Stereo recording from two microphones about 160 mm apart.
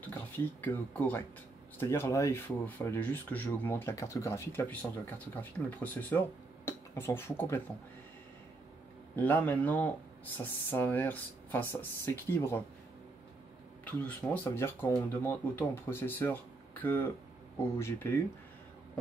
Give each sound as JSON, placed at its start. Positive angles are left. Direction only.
{"t": 0.1, "sound": "speech", "side_deg": 10}
{"t": 9.1, "sound": "speech", "side_deg": 10}
{"t": 13.8, "sound": "speech", "side_deg": 10}